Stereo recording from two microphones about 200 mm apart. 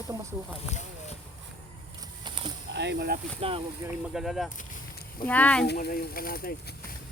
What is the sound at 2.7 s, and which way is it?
Speech, 55° right (ahead or behind).